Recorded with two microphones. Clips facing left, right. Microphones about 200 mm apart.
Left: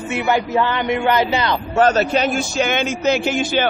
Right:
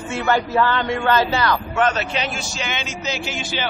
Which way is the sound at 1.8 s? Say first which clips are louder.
Left 8 dB; 40° left (ahead or behind).